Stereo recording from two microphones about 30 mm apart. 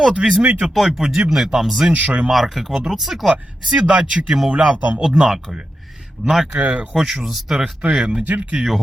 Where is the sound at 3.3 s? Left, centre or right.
Right.